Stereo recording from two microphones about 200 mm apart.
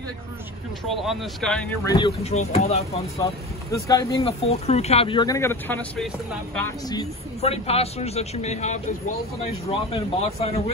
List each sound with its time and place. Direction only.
0.8 s speech: centre (ahead or behind)
1.9 s speech: 20° left (ahead or behind)
2.2 s a man's voice: 35° left (ahead or behind)
3.7 s speech: 15° left (ahead or behind)
4.3 s speech: 30° left (ahead or behind); by 6.0 s 10° left (ahead or behind)
6.6 s speech: 20° left (ahead or behind)
7.4 s a man's voice: 30° left (ahead or behind)